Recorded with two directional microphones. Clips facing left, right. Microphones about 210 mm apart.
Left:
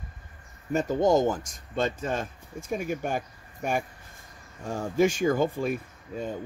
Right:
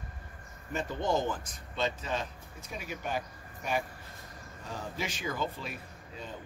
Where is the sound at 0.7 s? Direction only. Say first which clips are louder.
Left 9 dB; 45° left (ahead or behind).